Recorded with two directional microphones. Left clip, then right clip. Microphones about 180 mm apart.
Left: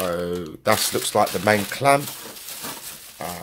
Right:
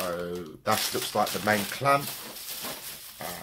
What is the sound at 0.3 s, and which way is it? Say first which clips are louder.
Speech: left 7 dB; 40° left (ahead or behind).